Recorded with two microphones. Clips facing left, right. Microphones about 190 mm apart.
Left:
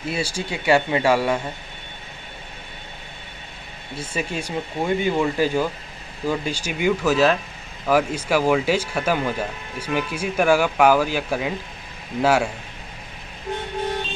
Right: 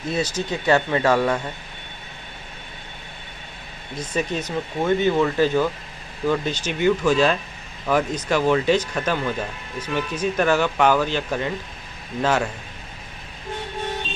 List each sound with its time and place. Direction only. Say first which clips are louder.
0.0 s speech: right 2 dB; 10° left (ahead or behind)
3.9 s speech: right 2 dB; 10° left (ahead or behind)